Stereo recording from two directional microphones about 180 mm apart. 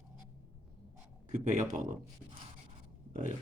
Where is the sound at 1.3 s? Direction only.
45° right (ahead or behind).